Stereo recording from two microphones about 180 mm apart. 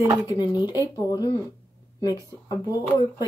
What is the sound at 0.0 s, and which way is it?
Speech, 15° right (ahead or behind).